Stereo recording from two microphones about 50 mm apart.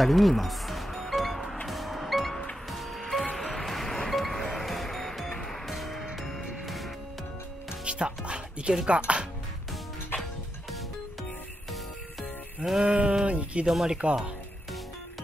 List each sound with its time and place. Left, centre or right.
0.0 s music: centre
7.8 s music: right
8.8 s speech: right
11.7 s music: centre
12.8 s speech: centre
13.7 s speech: centre